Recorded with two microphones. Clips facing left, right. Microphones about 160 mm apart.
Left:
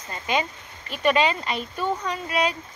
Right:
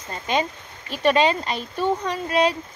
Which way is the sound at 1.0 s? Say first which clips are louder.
Right 2 dB; 35° right (ahead or behind).